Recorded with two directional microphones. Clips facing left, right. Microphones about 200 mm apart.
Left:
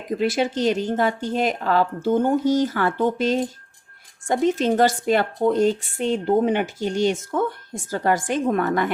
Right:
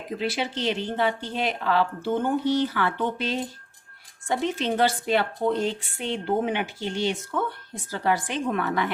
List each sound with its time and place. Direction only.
0.2 s a woman's voice: 45° left (ahead or behind)